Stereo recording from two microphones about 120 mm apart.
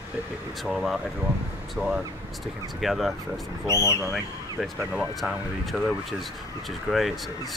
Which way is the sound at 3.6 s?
25° left (ahead or behind).